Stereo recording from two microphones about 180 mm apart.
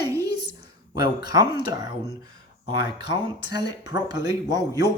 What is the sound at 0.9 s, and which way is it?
Speech, 25° right (ahead or behind).